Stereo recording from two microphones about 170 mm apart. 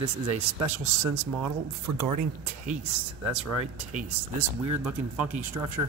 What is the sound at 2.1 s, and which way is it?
Speech, 45° right (ahead or behind).